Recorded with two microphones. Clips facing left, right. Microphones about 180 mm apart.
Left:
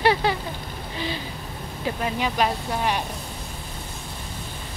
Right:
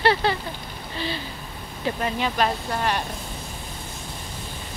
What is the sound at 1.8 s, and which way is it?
Speech, 10° left (ahead or behind).